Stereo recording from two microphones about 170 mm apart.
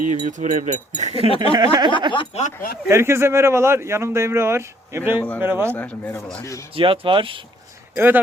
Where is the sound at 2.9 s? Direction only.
15° right (ahead or behind).